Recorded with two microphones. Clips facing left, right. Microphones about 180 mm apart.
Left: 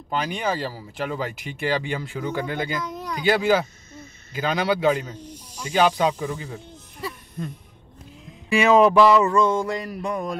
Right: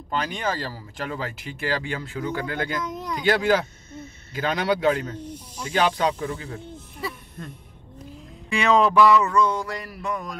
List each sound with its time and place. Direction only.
0.1 s speech: 10° left (ahead or behind)
3.3 s a man's voice: 5° left (ahead or behind)
5.1 s speech: 55° right (ahead or behind)
5.6 s speech: 10° left (ahead or behind)
6.5 s snake: 5° right (ahead or behind)
8.7 s a sound: 20° left (ahead or behind)